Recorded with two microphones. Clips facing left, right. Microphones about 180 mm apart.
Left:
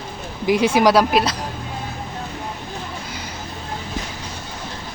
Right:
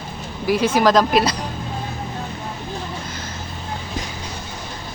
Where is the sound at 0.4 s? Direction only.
15° left (ahead or behind).